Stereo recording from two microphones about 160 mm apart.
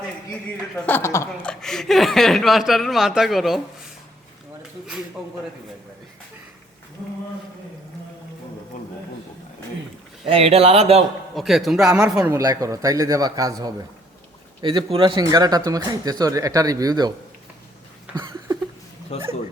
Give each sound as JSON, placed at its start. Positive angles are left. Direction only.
{"t": 0.9, "sound": "a woman's voice", "side_deg": 15}
{"t": 1.5, "sound": "speech", "side_deg": 5}
{"t": 10.2, "sound": "speech", "side_deg": -40}
{"t": 11.3, "sound": "speech", "side_deg": 0}
{"t": 12.3, "sound": "speech", "side_deg": -20}
{"t": 18.1, "sound": "a sound", "side_deg": -25}
{"t": 19.1, "sound": "speech", "side_deg": 40}